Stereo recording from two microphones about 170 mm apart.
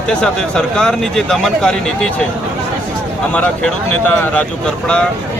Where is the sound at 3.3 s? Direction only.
5° left (ahead or behind).